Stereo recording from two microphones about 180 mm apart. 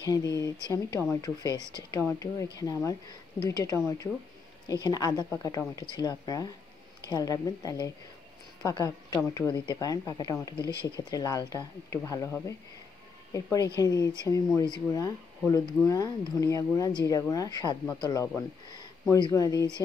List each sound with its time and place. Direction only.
0.0 s speech: 20° left (ahead or behind)